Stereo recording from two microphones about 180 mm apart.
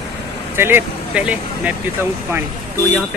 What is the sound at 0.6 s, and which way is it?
Speech, 10° right (ahead or behind).